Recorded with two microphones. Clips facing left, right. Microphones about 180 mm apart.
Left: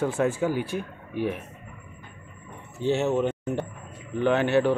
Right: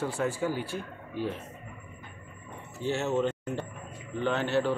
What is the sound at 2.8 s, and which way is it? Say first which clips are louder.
A man's voice: left 4 dB; 20° left (ahead or behind).